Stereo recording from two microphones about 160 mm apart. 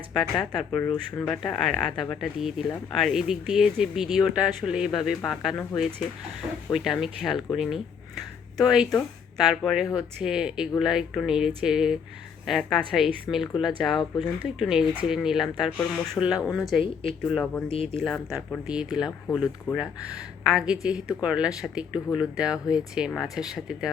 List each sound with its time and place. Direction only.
0.1 s speech: centre (ahead or behind)
16.8 s speech: 35° left (ahead or behind)
17.9 s speech: centre (ahead or behind)
20.5 s speech: 5° right (ahead or behind)